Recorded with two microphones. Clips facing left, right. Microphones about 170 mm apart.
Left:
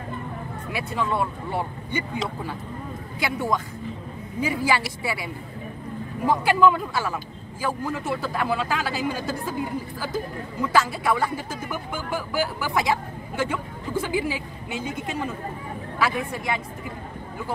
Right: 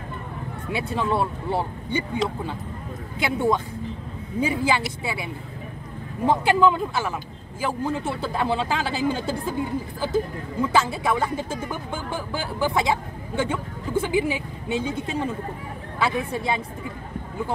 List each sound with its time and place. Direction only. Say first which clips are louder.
0.7 s speech: right 2 dB; 30° right (ahead or behind)
3.2 s speech: right 3 dB; 25° right (ahead or behind)